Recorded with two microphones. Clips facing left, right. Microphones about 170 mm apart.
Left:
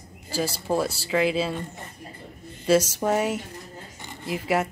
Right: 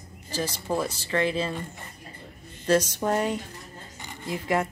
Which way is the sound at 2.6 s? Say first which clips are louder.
Left 2 dB; 5° left (ahead or behind).